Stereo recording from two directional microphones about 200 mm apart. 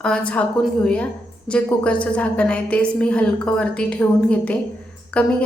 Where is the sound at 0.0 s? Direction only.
5° left (ahead or behind).